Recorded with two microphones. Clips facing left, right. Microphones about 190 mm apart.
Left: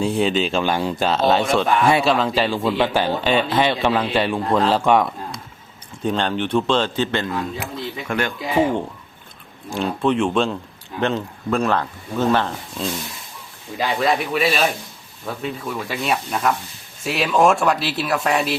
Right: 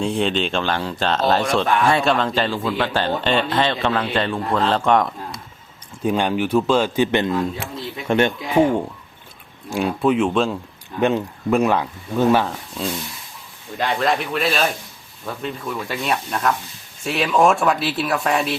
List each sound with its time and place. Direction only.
0.0 s speech: 5° left (ahead or behind)
2.6 s speech: 15° left (ahead or behind)
6.0 s speech: 10° right (ahead or behind)
8.4 s speech: 5° left (ahead or behind)
9.6 s speech: 5° right (ahead or behind)